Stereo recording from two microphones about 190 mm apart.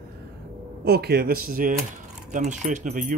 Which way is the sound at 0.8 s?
55° right (ahead or behind).